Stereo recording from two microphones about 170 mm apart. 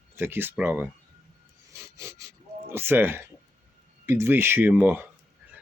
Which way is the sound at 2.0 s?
15° right (ahead or behind).